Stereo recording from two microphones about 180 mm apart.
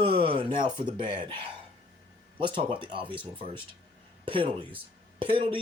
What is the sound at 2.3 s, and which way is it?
Speech, 30° right (ahead or behind).